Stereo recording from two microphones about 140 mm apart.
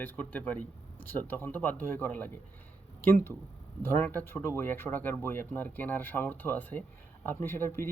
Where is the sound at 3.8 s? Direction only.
15° left (ahead or behind).